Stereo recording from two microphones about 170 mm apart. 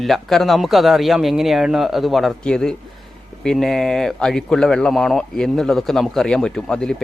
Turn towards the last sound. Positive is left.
turn(degrees=5)  # may be behind; listen again after turning